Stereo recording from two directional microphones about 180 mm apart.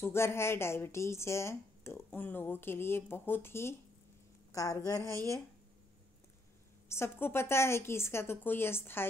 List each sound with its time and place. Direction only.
0.0 s a woman's voice: 15° left (ahead or behind)
6.9 s a woman's voice: 15° left (ahead or behind)